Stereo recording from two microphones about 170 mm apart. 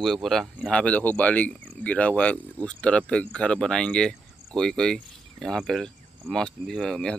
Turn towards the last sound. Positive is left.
turn(degrees=5)  # may be behind; listen again after turning